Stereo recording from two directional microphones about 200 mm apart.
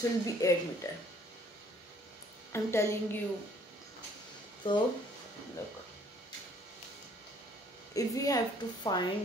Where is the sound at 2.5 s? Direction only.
15° left (ahead or behind).